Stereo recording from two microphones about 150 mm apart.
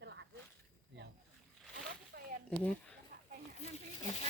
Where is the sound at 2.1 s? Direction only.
90° right.